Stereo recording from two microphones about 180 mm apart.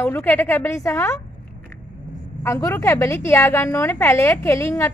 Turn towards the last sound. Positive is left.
turn(degrees=15)  # may be behind; listen again after turning